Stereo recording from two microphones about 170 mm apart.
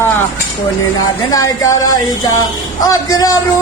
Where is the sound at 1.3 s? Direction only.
20° left (ahead or behind).